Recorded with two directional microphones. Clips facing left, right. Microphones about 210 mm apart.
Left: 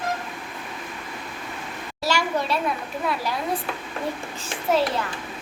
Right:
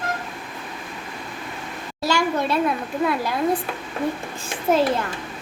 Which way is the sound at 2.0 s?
55° right (ahead or behind).